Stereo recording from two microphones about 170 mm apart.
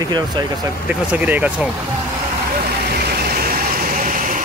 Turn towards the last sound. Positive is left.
turn(degrees=-50)  # may be behind; listen again after turning